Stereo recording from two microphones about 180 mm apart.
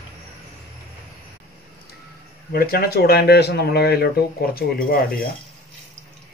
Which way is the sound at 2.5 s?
55° left (ahead or behind).